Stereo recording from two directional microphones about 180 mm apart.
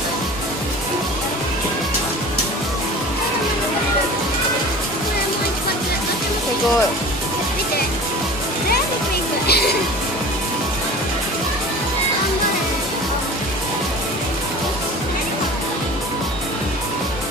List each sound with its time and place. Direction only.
9.5 s music: 65° left (ahead or behind)